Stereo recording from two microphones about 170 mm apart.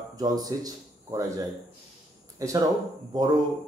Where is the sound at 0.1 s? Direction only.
20° right (ahead or behind).